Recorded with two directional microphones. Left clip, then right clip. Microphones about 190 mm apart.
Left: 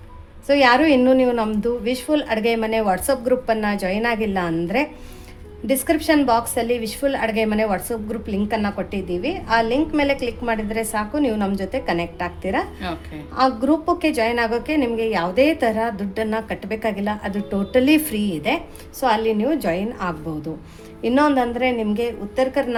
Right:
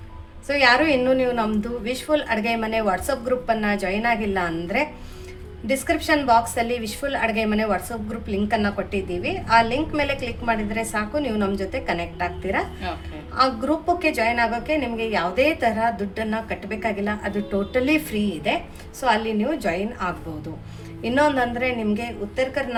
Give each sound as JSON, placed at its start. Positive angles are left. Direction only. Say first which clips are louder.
{"t": 0.4, "sound": "a woman's voice", "louder": "left 3 dB", "side_deg": 30}